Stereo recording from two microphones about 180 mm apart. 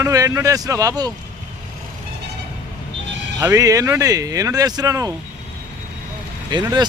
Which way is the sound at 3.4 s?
20° right (ahead or behind).